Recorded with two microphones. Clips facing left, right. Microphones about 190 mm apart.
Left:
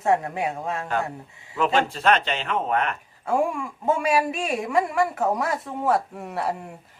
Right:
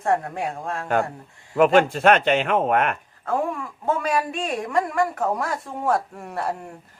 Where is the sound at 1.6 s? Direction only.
55° right (ahead or behind).